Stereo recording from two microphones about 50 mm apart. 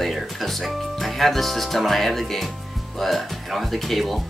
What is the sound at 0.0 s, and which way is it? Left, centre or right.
Speech, centre.